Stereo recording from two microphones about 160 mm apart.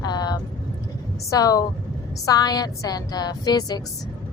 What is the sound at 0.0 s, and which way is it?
Vehicle, 25° left (ahead or behind).